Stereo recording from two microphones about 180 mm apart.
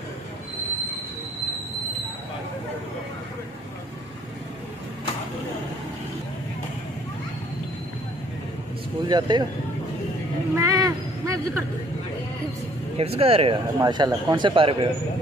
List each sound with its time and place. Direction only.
9.0 s a man's voice: 20° right (ahead or behind)
10.6 s a sound: 20° right (ahead or behind)
12.9 s a man's voice: 35° right (ahead or behind)